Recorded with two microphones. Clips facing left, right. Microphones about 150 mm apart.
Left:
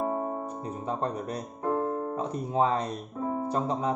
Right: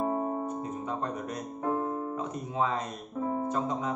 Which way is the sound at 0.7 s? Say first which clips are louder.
Left 2 dB; 30° left (ahead or behind).